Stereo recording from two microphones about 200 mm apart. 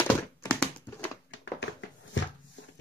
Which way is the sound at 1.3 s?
70° left (ahead or behind).